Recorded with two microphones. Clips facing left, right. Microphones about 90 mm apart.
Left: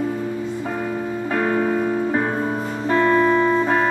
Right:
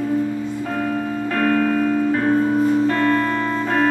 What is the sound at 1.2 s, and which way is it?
Music, 20° left (ahead or behind).